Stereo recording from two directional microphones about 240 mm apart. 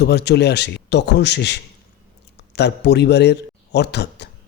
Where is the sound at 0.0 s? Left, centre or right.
Left.